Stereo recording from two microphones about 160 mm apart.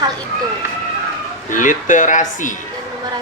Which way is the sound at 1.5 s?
55° left (ahead or behind).